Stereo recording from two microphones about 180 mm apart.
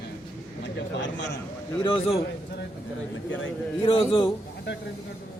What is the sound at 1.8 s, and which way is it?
Speech, 30° left (ahead or behind).